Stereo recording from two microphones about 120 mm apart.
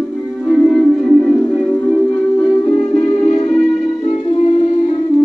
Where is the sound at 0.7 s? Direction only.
5° left (ahead or behind).